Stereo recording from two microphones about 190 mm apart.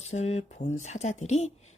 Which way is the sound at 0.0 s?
35° left (ahead or behind).